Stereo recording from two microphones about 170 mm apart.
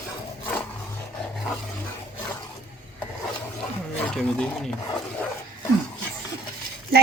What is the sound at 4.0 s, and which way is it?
Speech, 5° left (ahead or behind).